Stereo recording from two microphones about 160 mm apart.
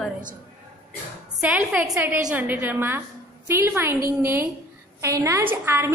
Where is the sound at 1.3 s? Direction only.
5° right (ahead or behind).